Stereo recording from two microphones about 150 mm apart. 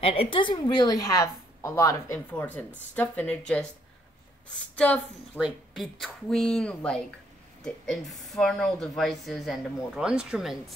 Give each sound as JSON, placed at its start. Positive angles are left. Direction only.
{"t": 0.0, "sound": "a woman's voice", "side_deg": 40}
{"t": 4.7, "sound": "a woman's voice", "side_deg": 10}
{"t": 5.4, "sound": "speech", "side_deg": -5}